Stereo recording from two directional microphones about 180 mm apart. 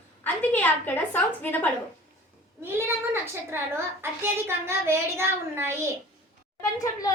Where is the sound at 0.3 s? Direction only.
10° left (ahead or behind).